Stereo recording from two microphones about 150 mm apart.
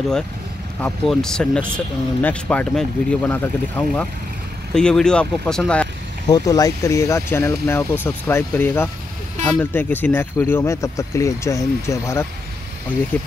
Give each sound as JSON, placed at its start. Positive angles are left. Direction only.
{"t": 0.7, "sound": "speech", "side_deg": 5}
{"t": 6.2, "sound": "speech", "side_deg": 25}